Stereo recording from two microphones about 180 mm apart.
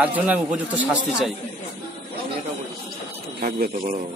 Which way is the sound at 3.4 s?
55° right (ahead or behind).